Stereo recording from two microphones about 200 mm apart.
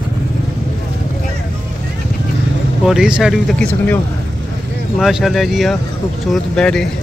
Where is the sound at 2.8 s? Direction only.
5° right (ahead or behind).